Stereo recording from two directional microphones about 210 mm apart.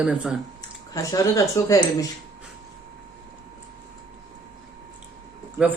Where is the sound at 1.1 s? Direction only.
15° left (ahead or behind).